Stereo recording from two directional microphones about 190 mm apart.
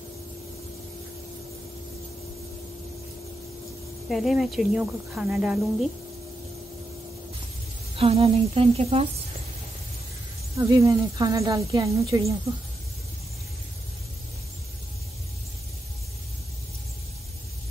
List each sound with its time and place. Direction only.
4.1 s a woman's voice: centre (ahead or behind)
7.9 s a sound: 30° right (ahead or behind)
10.5 s a woman's voice: 20° right (ahead or behind)